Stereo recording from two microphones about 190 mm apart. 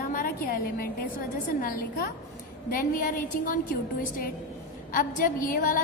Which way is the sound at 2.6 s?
45° left (ahead or behind).